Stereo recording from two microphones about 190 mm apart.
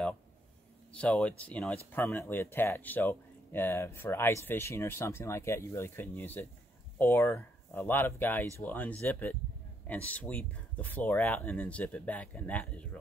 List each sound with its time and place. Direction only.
0.9 s speech: 5° left (ahead or behind)